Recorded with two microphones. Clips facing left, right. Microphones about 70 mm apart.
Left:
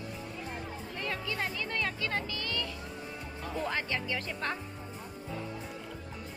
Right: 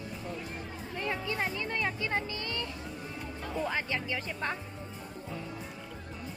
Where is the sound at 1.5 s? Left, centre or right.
Right.